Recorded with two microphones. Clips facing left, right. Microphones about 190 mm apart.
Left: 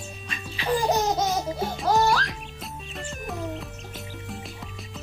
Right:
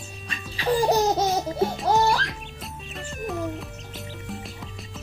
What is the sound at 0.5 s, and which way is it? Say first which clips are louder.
Laughter: right 3 dB; 35° right (ahead or behind).